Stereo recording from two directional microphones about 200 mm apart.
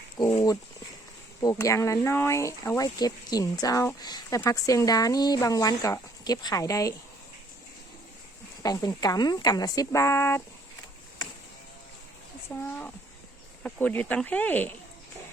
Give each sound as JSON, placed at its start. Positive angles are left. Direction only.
{"t": 0.2, "sound": "speech", "side_deg": 20}
{"t": 8.6, "sound": "a woman's voice", "side_deg": 20}
{"t": 12.5, "sound": "speech", "side_deg": 5}